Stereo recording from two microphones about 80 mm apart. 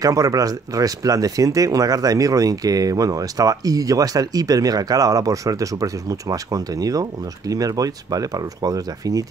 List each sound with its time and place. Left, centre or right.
0.0 s speech: right